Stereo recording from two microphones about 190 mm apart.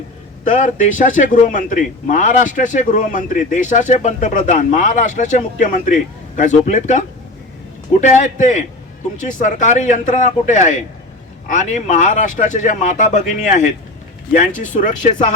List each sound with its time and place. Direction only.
0.4 s a man's voice: 40° left (ahead or behind)
8.0 s a man's voice: 40° left (ahead or behind)
14.8 s speech: 40° left (ahead or behind)